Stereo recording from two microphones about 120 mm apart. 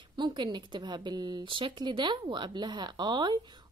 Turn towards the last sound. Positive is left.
turn(degrees=-35)  # may be behind; listen again after turning